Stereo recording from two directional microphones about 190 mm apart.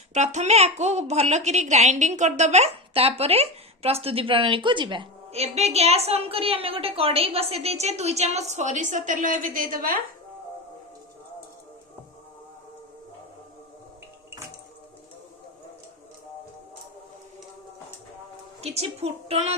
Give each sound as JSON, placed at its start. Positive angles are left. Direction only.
{"t": 0.1, "sound": "a woman's voice", "side_deg": -40}
{"t": 18.6, "sound": "a woman's voice", "side_deg": -35}